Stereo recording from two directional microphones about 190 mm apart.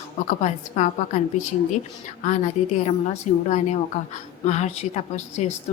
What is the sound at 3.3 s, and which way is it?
Speech, 40° left (ahead or behind).